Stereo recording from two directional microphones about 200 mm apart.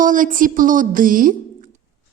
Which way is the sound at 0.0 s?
40° right (ahead or behind).